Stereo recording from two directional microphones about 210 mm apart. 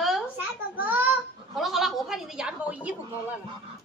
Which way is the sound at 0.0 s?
5° right (ahead or behind).